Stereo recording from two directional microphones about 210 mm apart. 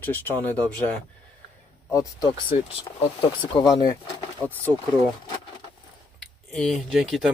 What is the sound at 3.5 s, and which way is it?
Speech, 20° left (ahead or behind).